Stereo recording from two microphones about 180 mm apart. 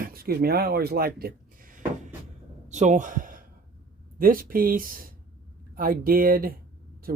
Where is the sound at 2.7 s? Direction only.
40° right (ahead or behind).